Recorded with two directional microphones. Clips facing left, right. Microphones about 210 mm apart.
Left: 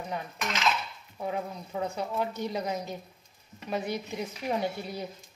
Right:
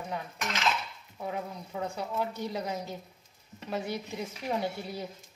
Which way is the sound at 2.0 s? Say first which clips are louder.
Left 2 dB; 20° left (ahead or behind).